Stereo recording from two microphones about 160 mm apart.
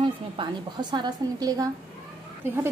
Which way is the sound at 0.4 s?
25° right (ahead or behind).